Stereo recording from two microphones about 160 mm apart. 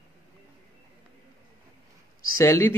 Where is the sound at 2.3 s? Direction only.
20° left (ahead or behind).